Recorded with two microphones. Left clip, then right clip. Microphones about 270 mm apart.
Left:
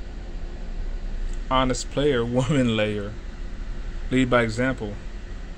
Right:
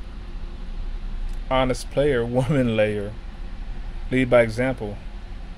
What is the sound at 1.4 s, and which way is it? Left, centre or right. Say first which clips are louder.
Speech: right 1 dB; right.